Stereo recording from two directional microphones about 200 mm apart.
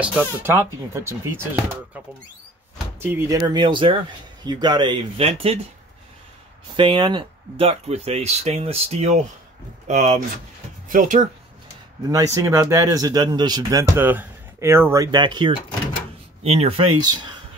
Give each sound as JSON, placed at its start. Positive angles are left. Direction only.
{"t": 0.0, "sound": "speech", "side_deg": -10}
{"t": 3.0, "sound": "speech", "side_deg": -10}
{"t": 6.8, "sound": "speech", "side_deg": -25}
{"t": 12.1, "sound": "speech", "side_deg": -15}